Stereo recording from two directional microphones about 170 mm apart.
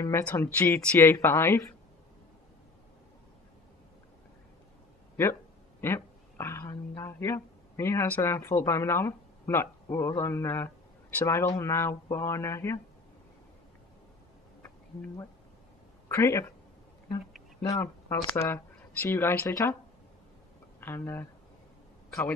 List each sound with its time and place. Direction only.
0.0 s speech: 15° left (ahead or behind)
5.8 s speech: 15° left (ahead or behind)
14.6 s a sound: 15° left (ahead or behind)
16.1 s speech: 15° left (ahead or behind)
17.6 s speech: 25° left (ahead or behind)
20.8 s speech: 10° left (ahead or behind)